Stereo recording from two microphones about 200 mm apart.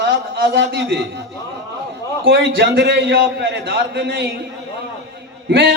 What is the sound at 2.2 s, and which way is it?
Speech, 50° right (ahead or behind).